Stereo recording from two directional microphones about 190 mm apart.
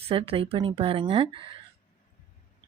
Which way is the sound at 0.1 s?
30° right (ahead or behind).